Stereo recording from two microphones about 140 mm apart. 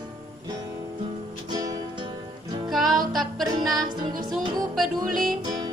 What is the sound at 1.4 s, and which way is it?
Music, 30° right (ahead or behind).